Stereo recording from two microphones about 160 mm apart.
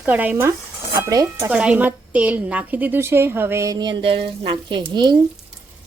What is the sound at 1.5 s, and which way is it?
A woman's voice, 10° right (ahead or behind).